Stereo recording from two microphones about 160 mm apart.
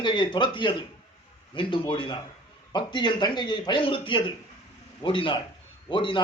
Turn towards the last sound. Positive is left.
turn(degrees=30)  # may be behind; listen again after turning